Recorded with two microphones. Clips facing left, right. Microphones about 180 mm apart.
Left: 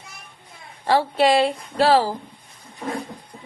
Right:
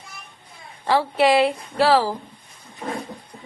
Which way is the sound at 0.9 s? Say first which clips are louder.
Even; 25° left (ahead or behind).